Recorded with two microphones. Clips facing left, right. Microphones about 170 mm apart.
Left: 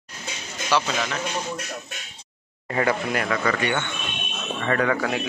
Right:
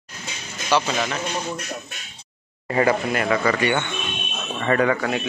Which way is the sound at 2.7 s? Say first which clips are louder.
Right 3 dB; 5° right (ahead or behind).